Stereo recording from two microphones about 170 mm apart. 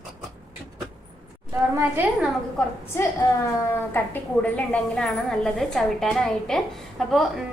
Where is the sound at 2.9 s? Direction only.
15° left (ahead or behind).